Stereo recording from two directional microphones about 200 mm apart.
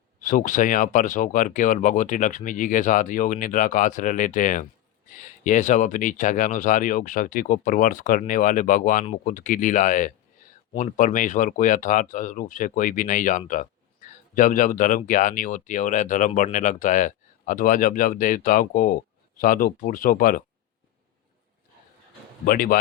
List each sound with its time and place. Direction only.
0.2 s speech: 40° left (ahead or behind)
22.4 s speech: 45° left (ahead or behind)